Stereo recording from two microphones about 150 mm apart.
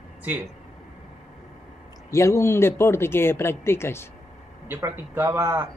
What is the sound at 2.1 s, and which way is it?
Speech, 20° left (ahead or behind).